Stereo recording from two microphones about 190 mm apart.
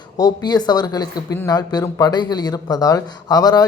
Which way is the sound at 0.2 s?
20° left (ahead or behind).